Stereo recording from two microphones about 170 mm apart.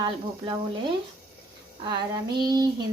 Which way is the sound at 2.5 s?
25° right (ahead or behind).